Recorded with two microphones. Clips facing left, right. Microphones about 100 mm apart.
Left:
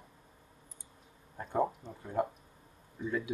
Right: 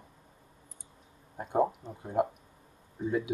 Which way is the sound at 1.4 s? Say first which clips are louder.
Right 4 dB; 15° right (ahead or behind).